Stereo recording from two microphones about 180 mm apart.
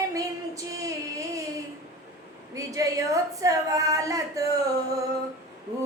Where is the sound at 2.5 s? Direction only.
20° right (ahead or behind).